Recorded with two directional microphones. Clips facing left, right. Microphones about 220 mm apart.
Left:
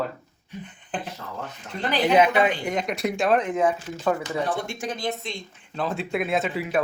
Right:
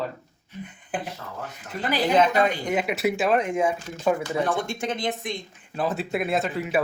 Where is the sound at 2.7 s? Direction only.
5° right (ahead or behind).